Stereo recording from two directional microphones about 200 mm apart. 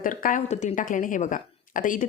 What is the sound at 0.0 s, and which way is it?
A woman's voice, 45° left (ahead or behind).